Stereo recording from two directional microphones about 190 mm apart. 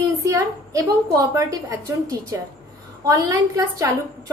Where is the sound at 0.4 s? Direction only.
15° right (ahead or behind).